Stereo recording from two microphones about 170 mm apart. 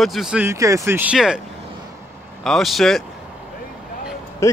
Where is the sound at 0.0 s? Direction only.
Centre (ahead or behind).